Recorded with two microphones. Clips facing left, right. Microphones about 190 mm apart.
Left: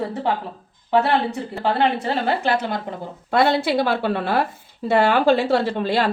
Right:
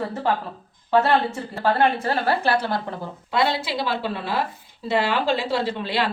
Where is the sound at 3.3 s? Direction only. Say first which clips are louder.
Left 5 dB; 50° left (ahead or behind).